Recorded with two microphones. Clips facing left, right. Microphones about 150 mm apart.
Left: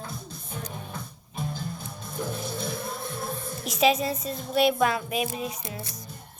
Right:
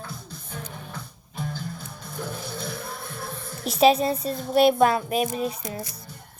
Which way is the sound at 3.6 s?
30° right (ahead or behind).